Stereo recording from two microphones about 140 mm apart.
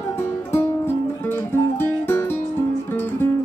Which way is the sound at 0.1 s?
15° left (ahead or behind).